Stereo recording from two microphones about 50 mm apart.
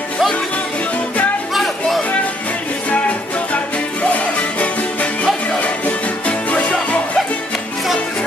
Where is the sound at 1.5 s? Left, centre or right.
Centre.